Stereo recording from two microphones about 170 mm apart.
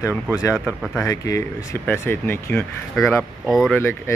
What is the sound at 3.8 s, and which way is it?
Speech, 15° left (ahead or behind).